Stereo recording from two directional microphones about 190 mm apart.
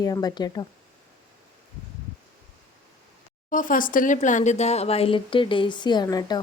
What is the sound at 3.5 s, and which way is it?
Speech, 45° left (ahead or behind).